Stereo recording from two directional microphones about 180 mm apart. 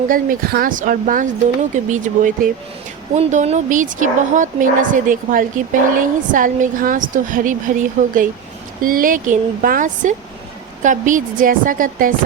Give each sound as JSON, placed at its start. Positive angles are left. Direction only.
{"t": 0.1, "sound": "a woman's voice", "side_deg": -50}